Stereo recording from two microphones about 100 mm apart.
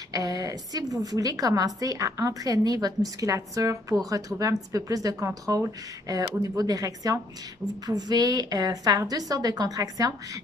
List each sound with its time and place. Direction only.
0.1 s a woman's voice: 40° right (ahead or behind)